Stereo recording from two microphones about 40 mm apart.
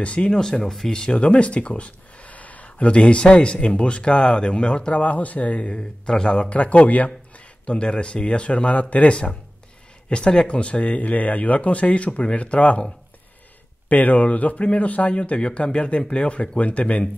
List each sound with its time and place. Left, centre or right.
0.0 s speech: left
1.1 s speech: left
2.2 s a sound: left
3.6 s speech: left
5.0 s speech: left
13.8 s speech: left